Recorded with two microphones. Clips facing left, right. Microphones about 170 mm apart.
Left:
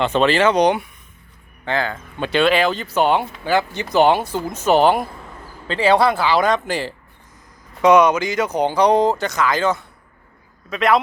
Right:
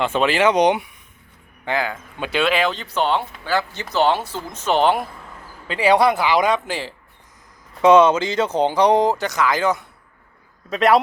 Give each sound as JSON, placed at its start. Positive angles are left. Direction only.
{"t": 0.0, "sound": "speech", "side_deg": -10}
{"t": 5.6, "sound": "speech", "side_deg": -10}
{"t": 6.7, "sound": "speech", "side_deg": 0}
{"t": 7.8, "sound": "speech", "side_deg": -25}